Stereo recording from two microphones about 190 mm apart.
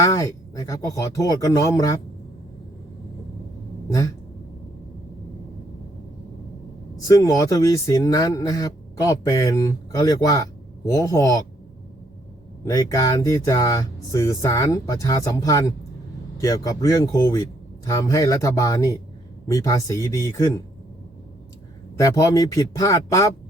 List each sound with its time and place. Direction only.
0.0 s speech: 20° left (ahead or behind)
7.1 s speech: 20° left (ahead or behind)
12.6 s speech: 20° left (ahead or behind)
22.0 s speech: 20° left (ahead or behind)